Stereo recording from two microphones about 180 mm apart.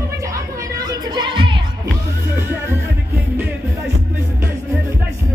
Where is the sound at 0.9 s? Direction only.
25° right (ahead or behind).